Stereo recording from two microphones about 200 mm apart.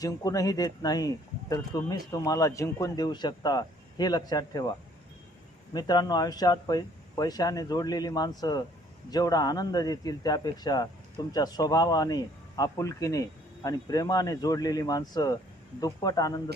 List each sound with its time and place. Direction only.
0.0 s a man's voice: 15° left (ahead or behind)
5.7 s a man's voice: 20° left (ahead or behind)